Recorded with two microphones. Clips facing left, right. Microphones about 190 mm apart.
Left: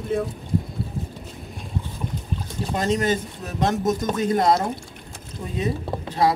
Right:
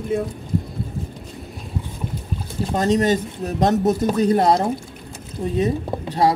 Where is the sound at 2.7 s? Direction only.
35° right (ahead or behind).